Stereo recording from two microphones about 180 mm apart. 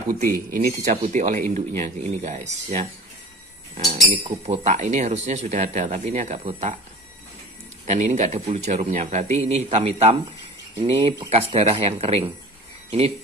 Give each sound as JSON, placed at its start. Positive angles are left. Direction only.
{"t": 0.3, "sound": "speech", "side_deg": -55}
{"t": 7.8, "sound": "speech", "side_deg": -40}